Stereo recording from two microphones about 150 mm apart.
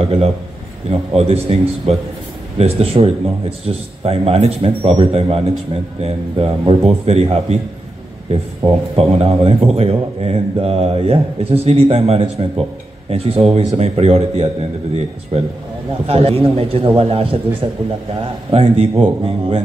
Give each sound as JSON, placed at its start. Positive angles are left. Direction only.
{"t": 0.0, "sound": "a man's voice", "side_deg": -40}
{"t": 16.1, "sound": "speech", "side_deg": -40}
{"t": 18.5, "sound": "speech", "side_deg": -40}